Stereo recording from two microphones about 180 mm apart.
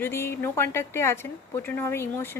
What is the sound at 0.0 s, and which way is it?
A woman's voice, 15° left (ahead or behind).